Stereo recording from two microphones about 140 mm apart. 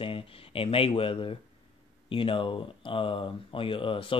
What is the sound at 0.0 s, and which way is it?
Speech, 40° left (ahead or behind).